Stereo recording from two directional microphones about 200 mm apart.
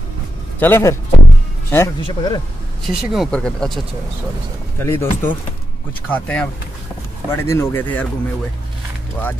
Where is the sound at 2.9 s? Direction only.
Centre (ahead or behind).